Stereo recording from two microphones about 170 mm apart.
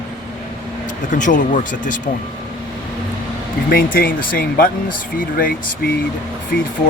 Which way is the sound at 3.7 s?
60° left (ahead or behind).